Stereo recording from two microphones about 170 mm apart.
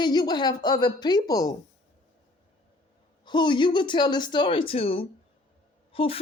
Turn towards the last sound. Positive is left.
turn(degrees=35)  # may be behind; listen again after turning